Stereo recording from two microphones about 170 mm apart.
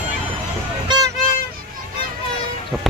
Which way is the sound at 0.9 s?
25° right (ahead or behind).